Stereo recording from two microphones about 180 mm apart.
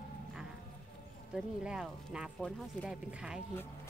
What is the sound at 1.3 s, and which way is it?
A woman's voice, 5° right (ahead or behind).